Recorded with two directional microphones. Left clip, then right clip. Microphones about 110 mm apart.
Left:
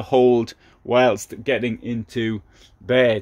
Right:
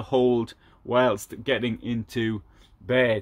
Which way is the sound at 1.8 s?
Centre (ahead or behind).